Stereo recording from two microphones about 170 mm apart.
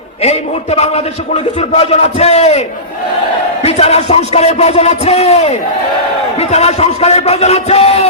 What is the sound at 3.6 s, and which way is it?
A man's voice, 40° left (ahead or behind).